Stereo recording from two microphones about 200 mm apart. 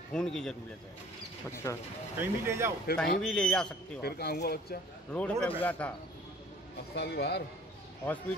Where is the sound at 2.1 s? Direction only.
15° right (ahead or behind).